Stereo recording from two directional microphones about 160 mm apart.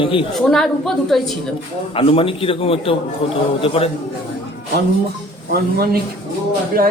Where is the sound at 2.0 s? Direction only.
35° left (ahead or behind).